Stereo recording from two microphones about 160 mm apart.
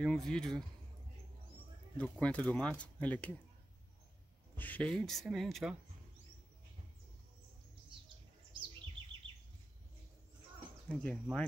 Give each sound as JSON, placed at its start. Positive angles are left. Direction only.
{"t": 0.0, "sound": "speech", "side_deg": 5}
{"t": 2.0, "sound": "speech", "side_deg": 5}
{"t": 4.6, "sound": "speech", "side_deg": 10}
{"t": 8.5, "sound": "bird", "side_deg": -30}
{"t": 10.9, "sound": "speech", "side_deg": 5}